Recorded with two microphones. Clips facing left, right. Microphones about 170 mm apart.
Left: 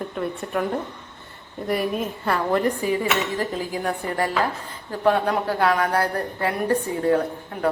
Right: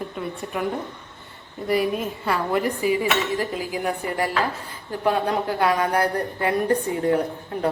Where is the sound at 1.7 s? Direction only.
Centre (ahead or behind); by 7.7 s 20° right (ahead or behind).